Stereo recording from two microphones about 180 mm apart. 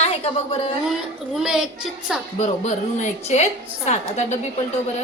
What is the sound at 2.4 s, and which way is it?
A woman's voice, 40° left (ahead or behind).